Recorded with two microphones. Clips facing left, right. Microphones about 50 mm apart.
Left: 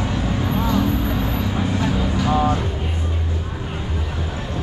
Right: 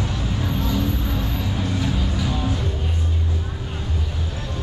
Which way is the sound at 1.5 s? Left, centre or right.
Left.